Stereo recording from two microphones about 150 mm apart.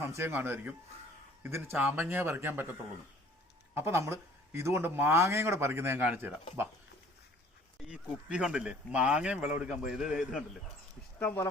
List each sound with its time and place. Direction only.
0.0 s speech: 15° right (ahead or behind)
3.8 s speech: 15° right (ahead or behind)
7.9 s speech: 5° right (ahead or behind)